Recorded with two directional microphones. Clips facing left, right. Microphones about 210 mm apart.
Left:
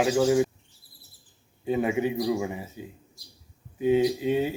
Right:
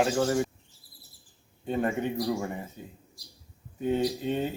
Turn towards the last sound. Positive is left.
turn(degrees=10)  # may be behind; listen again after turning